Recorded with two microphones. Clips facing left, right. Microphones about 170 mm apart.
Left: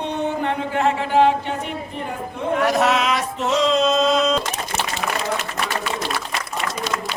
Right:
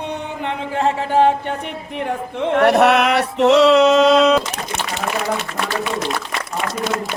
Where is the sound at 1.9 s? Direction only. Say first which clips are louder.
Right 5 dB; 75° right (ahead or behind).